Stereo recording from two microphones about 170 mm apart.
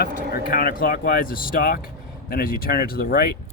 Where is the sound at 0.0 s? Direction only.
60° left (ahead or behind).